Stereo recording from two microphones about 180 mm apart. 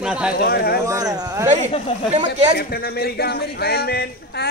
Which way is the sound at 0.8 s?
20° right (ahead or behind).